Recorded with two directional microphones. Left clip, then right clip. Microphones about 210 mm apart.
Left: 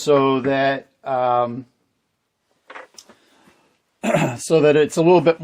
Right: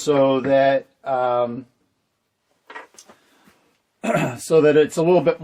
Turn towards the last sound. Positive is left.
turn(degrees=45)  # may be behind; listen again after turning